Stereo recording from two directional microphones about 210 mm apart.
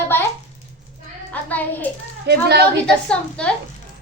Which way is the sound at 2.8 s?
5° left (ahead or behind).